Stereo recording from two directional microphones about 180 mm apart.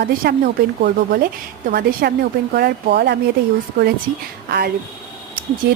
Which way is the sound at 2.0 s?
60° right (ahead or behind).